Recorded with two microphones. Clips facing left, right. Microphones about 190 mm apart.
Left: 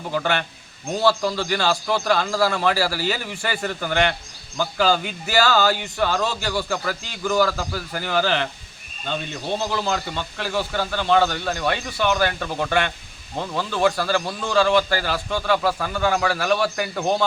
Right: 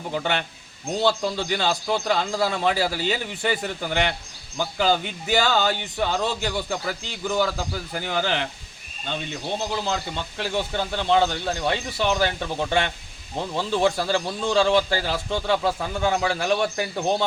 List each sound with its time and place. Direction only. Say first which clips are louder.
0.1 s a man's voice: left 3 dB; 20° right (ahead or behind)
9.8 s a man's voice: left 2 dB; 20° right (ahead or behind)